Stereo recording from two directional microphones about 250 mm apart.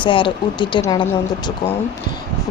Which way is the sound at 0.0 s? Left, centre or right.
Centre.